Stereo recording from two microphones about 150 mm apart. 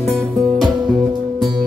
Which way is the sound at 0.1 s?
Centre (ahead or behind).